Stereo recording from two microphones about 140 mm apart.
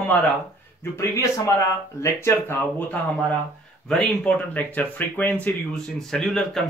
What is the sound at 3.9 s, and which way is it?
Speech, 5° left (ahead or behind).